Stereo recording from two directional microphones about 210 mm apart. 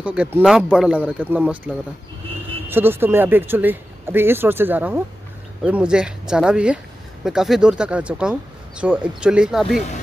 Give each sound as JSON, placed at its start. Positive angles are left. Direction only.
{"t": 0.0, "sound": "speech", "side_deg": -5}
{"t": 2.7, "sound": "speech", "side_deg": -10}